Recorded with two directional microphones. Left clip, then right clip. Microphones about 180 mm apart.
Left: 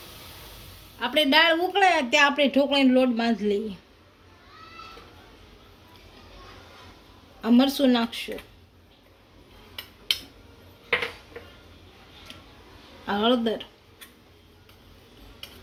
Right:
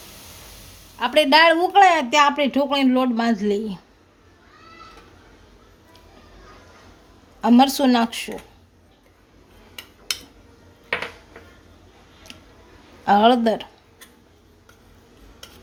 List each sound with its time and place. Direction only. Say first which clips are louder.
0.9 s speech: right 5 dB; 50° right (ahead or behind)
7.4 s speech: right 5 dB; 55° right (ahead or behind)
13.1 s speech: right 8 dB; 60° right (ahead or behind)